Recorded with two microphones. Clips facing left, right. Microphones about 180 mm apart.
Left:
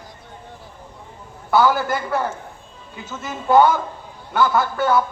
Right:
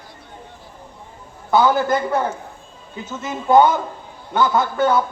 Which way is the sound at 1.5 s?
20° right (ahead or behind).